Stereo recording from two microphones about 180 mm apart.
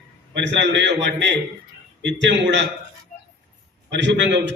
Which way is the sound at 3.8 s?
80° right.